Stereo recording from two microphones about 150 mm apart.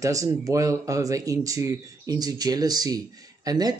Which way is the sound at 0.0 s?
20° right (ahead or behind).